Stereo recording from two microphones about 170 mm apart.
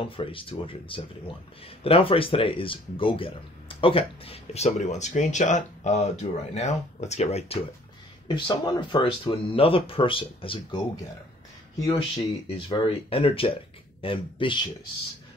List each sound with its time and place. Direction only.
0.0 s speech: 30° left (ahead or behind)
8.3 s speech: 25° left (ahead or behind)
12.4 s speech: 30° left (ahead or behind)